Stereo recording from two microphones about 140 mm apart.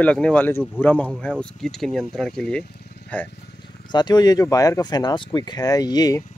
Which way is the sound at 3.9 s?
30° left (ahead or behind).